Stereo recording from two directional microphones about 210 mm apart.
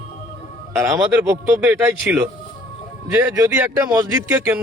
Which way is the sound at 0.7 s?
15° right (ahead or behind).